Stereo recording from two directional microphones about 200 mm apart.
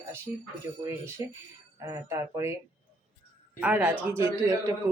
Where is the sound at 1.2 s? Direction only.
15° right (ahead or behind).